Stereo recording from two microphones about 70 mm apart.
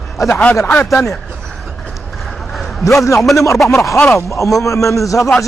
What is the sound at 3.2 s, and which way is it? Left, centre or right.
Speech, centre.